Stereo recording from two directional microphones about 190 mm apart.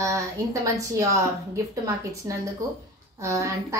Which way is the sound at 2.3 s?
15° right (ahead or behind).